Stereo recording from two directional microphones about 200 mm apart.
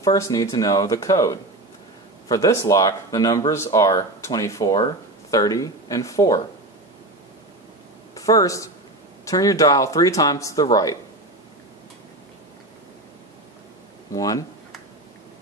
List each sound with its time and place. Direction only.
0.0 s speech: 20° left (ahead or behind)
8.1 s speech: 15° left (ahead or behind)
14.1 s speech: 15° left (ahead or behind)